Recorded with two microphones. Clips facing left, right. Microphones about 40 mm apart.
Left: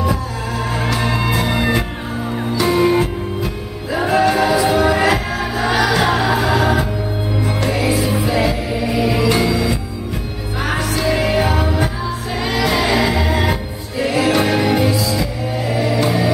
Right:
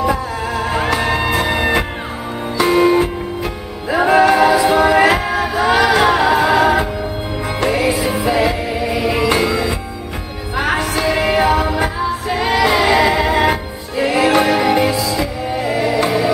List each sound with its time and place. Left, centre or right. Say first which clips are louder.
0.0 s music: right 3 dB; centre
3.9 s music: right 4 dB; centre